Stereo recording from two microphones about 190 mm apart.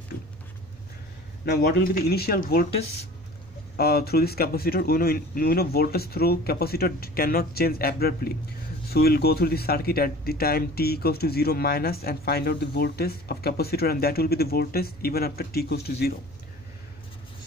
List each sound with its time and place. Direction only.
1.4 s speech: 55° left (ahead or behind)
3.7 s speech: 55° left (ahead or behind)